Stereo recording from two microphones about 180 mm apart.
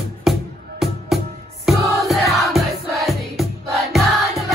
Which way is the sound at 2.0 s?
Centre (ahead or behind).